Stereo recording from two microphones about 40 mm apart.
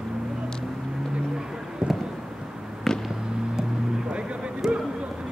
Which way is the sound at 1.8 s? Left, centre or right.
Right.